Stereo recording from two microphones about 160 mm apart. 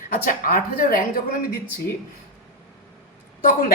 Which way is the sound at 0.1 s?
60° left (ahead or behind).